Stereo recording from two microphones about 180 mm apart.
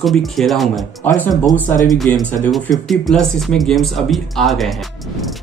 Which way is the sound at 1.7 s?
45° left (ahead or behind).